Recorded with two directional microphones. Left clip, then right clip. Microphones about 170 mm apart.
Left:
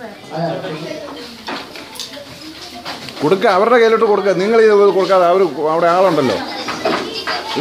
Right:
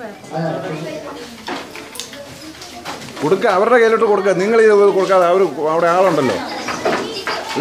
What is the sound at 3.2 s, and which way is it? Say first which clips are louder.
A man's voice: left 2 dB; 35° left (ahead or behind).